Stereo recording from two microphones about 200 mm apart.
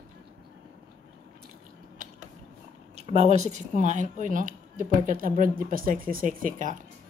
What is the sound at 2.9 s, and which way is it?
Speech, 30° right (ahead or behind).